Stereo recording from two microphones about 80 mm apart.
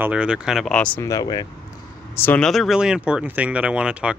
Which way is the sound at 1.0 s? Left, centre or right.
Left.